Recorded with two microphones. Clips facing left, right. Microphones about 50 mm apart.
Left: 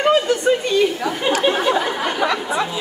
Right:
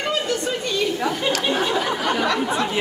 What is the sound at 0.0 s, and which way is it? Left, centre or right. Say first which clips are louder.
Speech: left 7 dB; left.